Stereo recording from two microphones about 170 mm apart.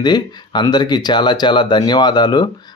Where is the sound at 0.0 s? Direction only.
25° left (ahead or behind).